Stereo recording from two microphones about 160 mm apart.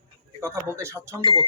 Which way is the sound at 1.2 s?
30° right (ahead or behind).